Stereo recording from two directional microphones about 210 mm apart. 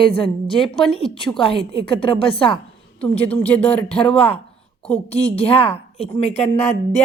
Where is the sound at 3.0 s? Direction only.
5° left (ahead or behind).